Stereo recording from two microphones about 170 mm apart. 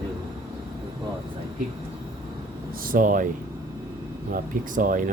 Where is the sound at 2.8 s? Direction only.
55° right (ahead or behind).